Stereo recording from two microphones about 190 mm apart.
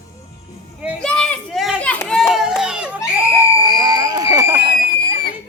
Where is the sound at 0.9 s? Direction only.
5° left (ahead or behind).